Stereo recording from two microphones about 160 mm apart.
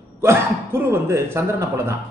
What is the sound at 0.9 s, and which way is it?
Speech, 15° right (ahead or behind).